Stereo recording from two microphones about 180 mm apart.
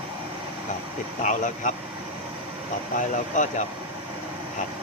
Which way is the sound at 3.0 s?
45° left (ahead or behind).